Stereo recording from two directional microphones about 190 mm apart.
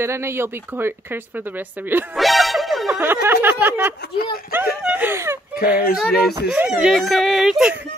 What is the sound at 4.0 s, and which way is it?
Speech, 55° left (ahead or behind).